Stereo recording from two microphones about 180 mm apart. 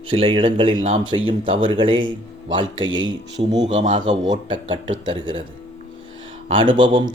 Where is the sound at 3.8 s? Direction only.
25° right (ahead or behind).